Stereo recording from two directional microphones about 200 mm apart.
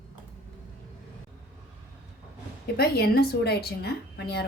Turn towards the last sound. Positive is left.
turn(degrees=55)  # may be behind; listen again after turning